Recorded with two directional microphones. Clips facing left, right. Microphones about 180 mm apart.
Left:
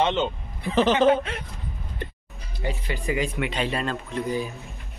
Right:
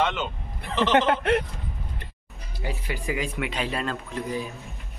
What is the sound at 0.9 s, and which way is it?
Speech, 70° right (ahead or behind).